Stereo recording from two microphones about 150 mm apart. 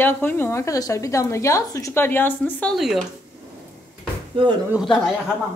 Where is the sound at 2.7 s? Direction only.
Centre (ahead or behind).